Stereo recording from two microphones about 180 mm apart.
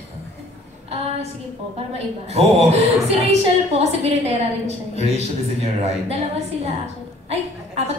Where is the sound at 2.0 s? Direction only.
35° right (ahead or behind).